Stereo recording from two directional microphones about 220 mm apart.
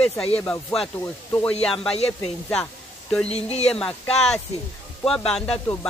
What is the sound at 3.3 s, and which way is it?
Speech, 30° left (ahead or behind).